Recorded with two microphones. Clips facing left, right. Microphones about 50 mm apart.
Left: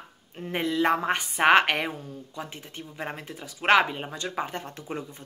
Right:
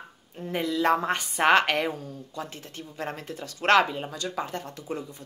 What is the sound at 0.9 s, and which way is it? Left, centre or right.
A woman's voice, centre.